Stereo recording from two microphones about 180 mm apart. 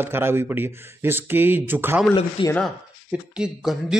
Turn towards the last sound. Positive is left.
turn(degrees=-5)  # may be behind; listen again after turning